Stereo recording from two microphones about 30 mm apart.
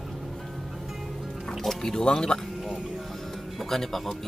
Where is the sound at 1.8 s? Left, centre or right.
Left.